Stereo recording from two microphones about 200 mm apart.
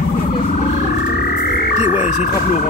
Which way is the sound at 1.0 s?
45° left (ahead or behind).